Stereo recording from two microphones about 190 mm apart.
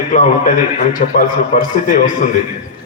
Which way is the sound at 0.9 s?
45° left (ahead or behind).